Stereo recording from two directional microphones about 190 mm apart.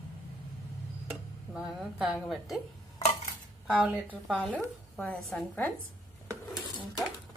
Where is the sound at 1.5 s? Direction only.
5° right (ahead or behind).